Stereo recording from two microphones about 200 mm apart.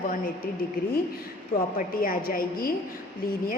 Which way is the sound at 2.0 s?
45° left (ahead or behind).